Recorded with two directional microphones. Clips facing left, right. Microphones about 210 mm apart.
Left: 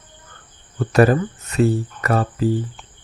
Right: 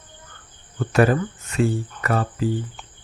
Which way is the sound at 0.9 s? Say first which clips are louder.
Left 3 dB; 40° left (ahead or behind).